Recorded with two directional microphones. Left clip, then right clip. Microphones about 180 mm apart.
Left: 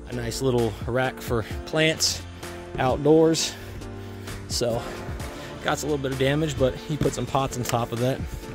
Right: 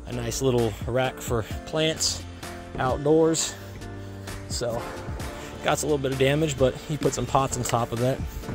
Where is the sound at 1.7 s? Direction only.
40° left (ahead or behind).